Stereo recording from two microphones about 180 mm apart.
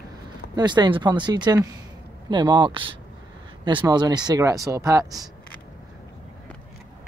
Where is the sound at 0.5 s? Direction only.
25° right (ahead or behind).